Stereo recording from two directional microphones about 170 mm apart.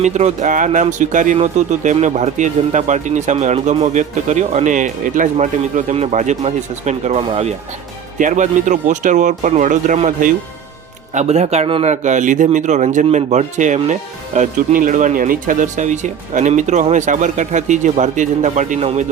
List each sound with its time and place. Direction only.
0.0 s a man's voice: 40° right (ahead or behind)